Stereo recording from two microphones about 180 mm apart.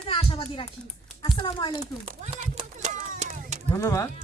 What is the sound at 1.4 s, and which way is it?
Speech, 25° left (ahead or behind).